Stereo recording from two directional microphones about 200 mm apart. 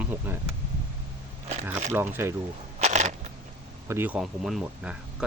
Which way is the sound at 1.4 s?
35° right (ahead or behind).